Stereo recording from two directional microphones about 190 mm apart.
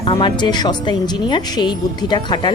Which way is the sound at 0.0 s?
25° left (ahead or behind).